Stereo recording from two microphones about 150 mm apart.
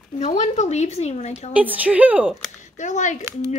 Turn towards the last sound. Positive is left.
turn(degrees=50)  # may be behind; listen again after turning